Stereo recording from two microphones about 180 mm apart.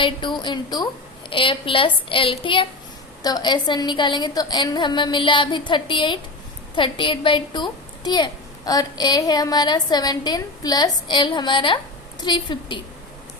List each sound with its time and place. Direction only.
0.0 s a woman's voice: 25° left (ahead or behind)